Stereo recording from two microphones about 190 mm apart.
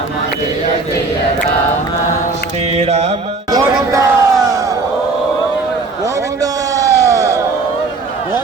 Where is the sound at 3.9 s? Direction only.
15° right (ahead or behind).